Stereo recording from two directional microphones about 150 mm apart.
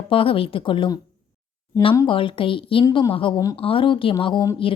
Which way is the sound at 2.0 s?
35° left (ahead or behind).